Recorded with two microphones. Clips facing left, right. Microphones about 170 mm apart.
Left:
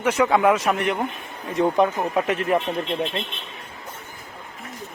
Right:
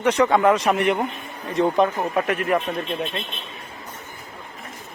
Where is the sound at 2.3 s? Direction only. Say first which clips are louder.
Even; 25° left (ahead or behind).